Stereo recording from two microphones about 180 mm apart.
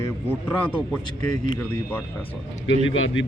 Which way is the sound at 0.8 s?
5° left (ahead or behind).